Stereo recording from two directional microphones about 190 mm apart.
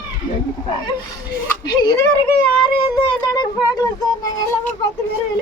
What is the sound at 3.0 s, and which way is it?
Speech, 20° left (ahead or behind).